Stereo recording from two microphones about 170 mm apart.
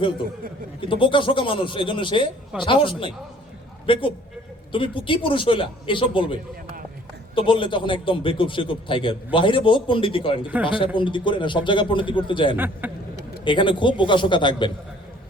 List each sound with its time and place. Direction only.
0.8 s a man's voice: 30° left (ahead or behind)
12.5 s speech: 10° right (ahead or behind)
13.4 s a man's voice: 30° left (ahead or behind)